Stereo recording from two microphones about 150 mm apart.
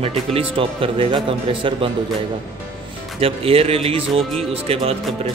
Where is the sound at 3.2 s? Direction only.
40° right (ahead or behind).